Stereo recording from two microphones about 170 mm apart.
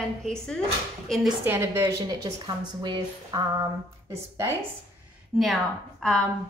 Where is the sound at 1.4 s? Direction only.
15° right (ahead or behind).